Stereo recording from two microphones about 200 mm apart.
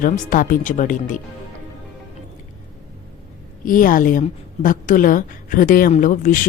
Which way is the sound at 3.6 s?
45° left (ahead or behind).